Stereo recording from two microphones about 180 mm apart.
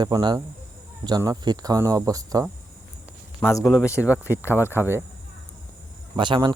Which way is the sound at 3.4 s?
15° left (ahead or behind).